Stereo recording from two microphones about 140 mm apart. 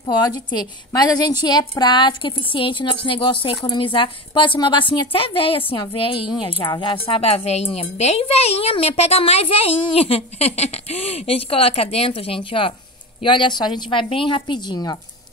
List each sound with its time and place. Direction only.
0.5 s a woman's voice: 30° left (ahead or behind)